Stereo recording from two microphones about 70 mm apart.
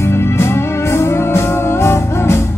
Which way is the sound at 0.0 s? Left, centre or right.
Left.